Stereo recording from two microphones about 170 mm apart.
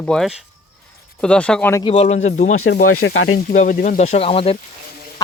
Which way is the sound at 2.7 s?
75° left (ahead or behind).